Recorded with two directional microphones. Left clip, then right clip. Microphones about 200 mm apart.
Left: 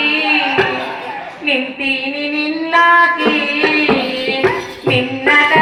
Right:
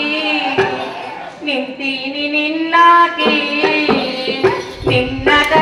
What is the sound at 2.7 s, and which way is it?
Music, 20° right (ahead or behind).